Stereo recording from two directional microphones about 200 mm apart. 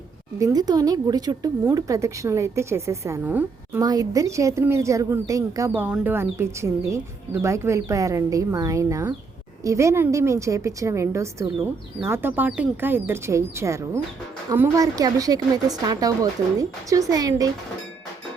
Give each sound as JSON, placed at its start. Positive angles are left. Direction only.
{"t": 0.3, "sound": "a woman's voice", "side_deg": -20}